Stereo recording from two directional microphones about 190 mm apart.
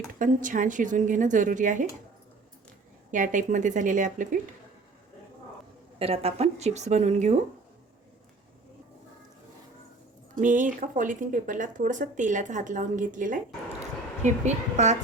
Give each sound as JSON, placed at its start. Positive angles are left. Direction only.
{"t": 0.2, "sound": "speech", "side_deg": -45}
{"t": 3.1, "sound": "speech", "side_deg": -40}
{"t": 6.0, "sound": "speech", "side_deg": -30}
{"t": 10.4, "sound": "speech", "side_deg": -40}